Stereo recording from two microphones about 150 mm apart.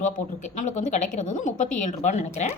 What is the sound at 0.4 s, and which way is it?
A woman's voice, 55° left (ahead or behind).